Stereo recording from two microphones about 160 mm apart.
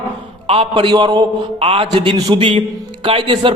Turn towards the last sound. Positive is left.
turn(degrees=-30)  # may be behind; listen again after turning